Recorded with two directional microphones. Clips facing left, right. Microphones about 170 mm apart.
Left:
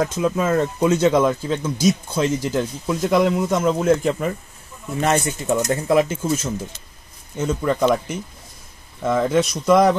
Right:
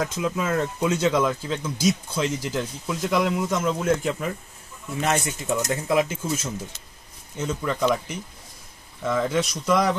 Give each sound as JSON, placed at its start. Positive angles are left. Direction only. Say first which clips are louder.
{"t": 0.0, "sound": "speech", "louder": "left 6 dB", "side_deg": 45}
{"t": 7.6, "sound": "speech", "louder": "left 5 dB", "side_deg": 45}